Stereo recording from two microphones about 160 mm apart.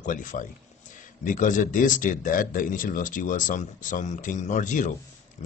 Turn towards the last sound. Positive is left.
turn(degrees=45)  # may be behind; listen again after turning